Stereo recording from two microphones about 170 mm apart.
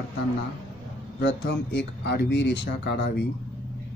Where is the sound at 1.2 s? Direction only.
85° left.